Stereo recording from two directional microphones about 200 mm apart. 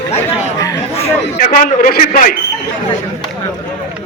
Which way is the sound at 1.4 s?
45° left (ahead or behind).